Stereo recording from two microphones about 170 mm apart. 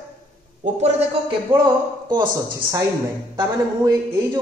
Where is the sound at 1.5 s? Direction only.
30° right (ahead or behind).